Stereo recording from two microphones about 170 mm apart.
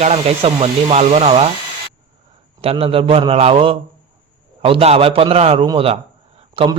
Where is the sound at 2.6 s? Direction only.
35° right (ahead or behind).